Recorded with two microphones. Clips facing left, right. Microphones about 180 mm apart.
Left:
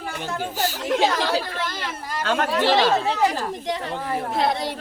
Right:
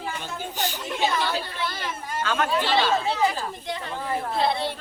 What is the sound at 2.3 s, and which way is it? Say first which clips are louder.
Speech: left 4 dB; 80° left.